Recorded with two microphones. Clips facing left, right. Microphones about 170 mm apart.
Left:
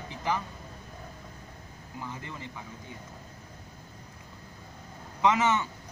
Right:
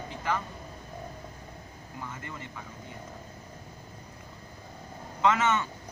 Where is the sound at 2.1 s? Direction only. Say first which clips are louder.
Left 1 dB; 20° left (ahead or behind).